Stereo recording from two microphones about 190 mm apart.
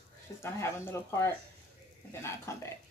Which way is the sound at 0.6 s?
15° left (ahead or behind).